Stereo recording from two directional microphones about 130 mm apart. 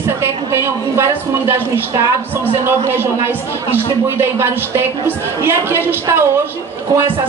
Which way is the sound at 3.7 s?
20° right (ahead or behind).